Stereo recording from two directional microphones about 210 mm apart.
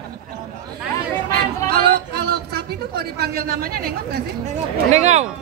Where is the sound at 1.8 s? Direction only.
50° right (ahead or behind).